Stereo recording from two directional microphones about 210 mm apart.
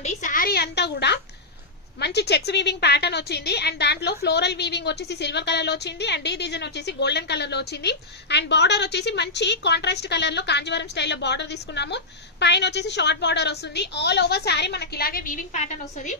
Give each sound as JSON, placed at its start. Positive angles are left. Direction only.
{"t": 0.0, "sound": "a woman's voice", "side_deg": 35}